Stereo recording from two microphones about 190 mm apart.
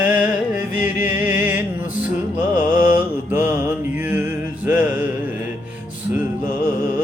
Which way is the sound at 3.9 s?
10° right (ahead or behind).